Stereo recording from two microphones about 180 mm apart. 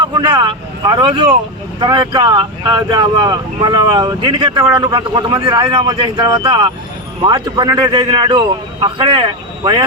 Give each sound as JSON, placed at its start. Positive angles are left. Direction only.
{"t": 0.0, "sound": "speech", "side_deg": -25}